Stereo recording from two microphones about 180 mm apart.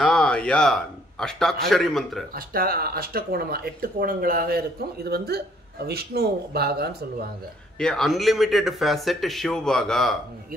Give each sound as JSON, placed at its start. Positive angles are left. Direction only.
{"t": 0.0, "sound": "a sound", "side_deg": 5}
{"t": 1.2, "sound": "speech", "side_deg": 5}
{"t": 2.3, "sound": "speech", "side_deg": -55}
{"t": 7.8, "sound": "speech", "side_deg": 5}